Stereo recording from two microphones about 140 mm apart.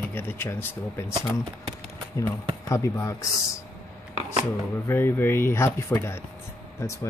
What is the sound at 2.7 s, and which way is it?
Speech, 20° left (ahead or behind).